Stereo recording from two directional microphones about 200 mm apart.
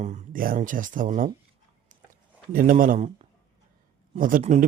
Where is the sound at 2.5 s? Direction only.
45° right (ahead or behind).